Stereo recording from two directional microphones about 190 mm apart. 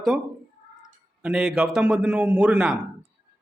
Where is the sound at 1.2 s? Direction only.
5° right (ahead or behind).